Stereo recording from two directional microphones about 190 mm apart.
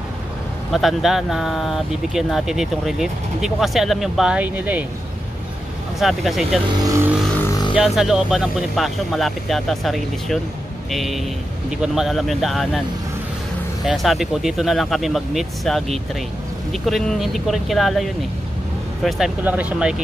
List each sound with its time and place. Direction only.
0.7 s speech: centre (ahead or behind)
5.9 s speech: centre (ahead or behind)
6.8 s speech: 15° right (ahead or behind)
7.7 s speech: centre (ahead or behind)
13.8 s speech: centre (ahead or behind)